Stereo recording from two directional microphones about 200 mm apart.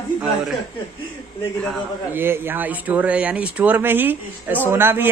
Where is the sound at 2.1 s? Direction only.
10° right (ahead or behind).